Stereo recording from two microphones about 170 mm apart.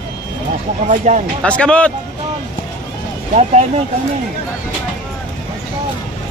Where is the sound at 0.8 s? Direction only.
45° right (ahead or behind).